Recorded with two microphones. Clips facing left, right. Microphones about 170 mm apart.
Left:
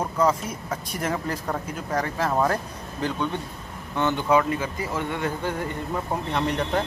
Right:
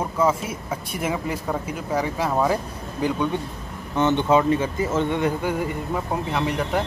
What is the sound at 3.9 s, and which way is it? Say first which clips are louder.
Speech: right 3 dB; 20° right (ahead or behind).